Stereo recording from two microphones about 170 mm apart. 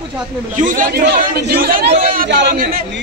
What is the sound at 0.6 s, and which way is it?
Speech, 50° right (ahead or behind).